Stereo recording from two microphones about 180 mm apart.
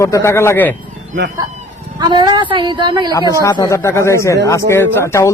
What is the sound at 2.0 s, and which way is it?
A woman's voice, 25° right (ahead or behind).